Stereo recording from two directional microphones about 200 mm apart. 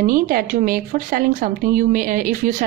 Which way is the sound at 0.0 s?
45° right (ahead or behind).